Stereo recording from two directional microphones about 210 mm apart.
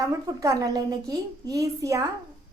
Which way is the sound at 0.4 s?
15° right (ahead or behind).